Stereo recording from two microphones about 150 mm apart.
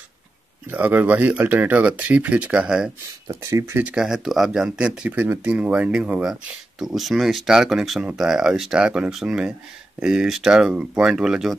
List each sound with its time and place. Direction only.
0.7 s speech: 10° right (ahead or behind)
3.3 s speech: 20° right (ahead or behind)
3.9 s speech: 5° right (ahead or behind)